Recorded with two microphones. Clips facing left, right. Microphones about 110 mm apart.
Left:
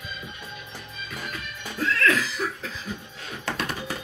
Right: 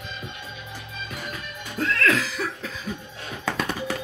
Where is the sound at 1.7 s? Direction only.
55° right (ahead or behind).